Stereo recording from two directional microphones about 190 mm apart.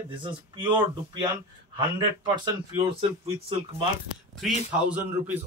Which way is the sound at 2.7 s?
25° right (ahead or behind).